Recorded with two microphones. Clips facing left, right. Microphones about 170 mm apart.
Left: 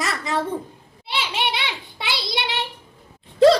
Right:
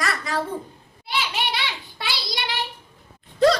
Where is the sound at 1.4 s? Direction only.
20° left (ahead or behind).